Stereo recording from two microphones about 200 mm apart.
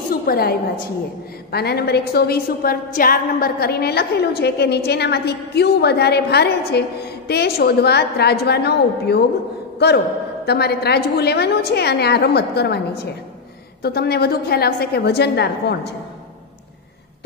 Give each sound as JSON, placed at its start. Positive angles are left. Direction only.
{"t": 0.1, "sound": "a woman's voice", "side_deg": 50}
{"t": 10.4, "sound": "a woman's voice", "side_deg": 55}